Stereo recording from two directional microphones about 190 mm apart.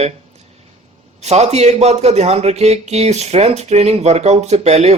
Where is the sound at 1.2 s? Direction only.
35° right (ahead or behind).